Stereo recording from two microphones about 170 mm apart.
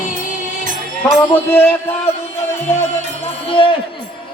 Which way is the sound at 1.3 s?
10° left (ahead or behind).